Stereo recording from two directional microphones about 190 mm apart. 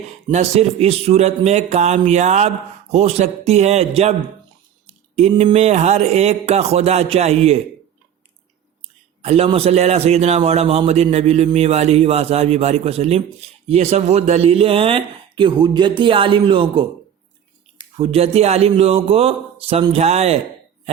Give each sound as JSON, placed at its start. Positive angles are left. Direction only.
{"t": 0.3, "sound": "a man's voice", "side_deg": -35}
{"t": 8.8, "sound": "a man's voice", "side_deg": -30}
{"t": 17.9, "sound": "a man's voice", "side_deg": -30}